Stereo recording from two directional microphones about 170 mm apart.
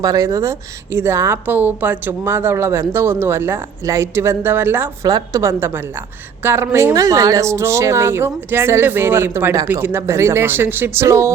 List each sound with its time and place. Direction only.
0.0 s speech: 20° right (ahead or behind)